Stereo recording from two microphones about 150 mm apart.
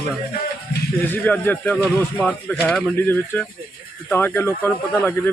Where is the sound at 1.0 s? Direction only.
10° left (ahead or behind).